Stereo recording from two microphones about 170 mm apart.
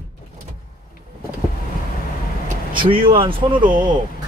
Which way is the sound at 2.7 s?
30° right (ahead or behind).